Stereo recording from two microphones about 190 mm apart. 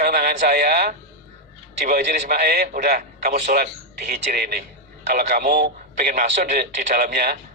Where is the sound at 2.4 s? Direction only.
50° right (ahead or behind).